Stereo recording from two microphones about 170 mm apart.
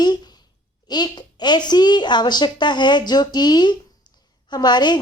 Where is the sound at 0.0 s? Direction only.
25° left (ahead or behind).